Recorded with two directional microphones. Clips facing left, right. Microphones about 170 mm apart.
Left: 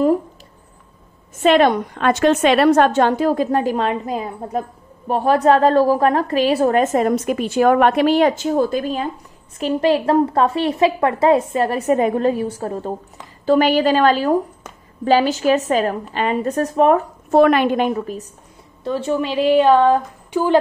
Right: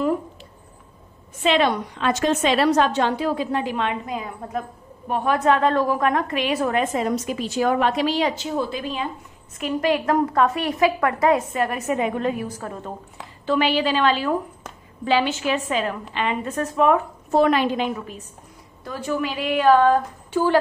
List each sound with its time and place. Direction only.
1.4 s a woman's voice: 50° left (ahead or behind)
9.6 s a woman's voice: 30° left (ahead or behind)
13.5 s a woman's voice: 45° left (ahead or behind)
17.3 s a woman's voice: 60° left (ahead or behind); by 18.2 s 40° left (ahead or behind)
18.9 s a woman's voice: 25° left (ahead or behind)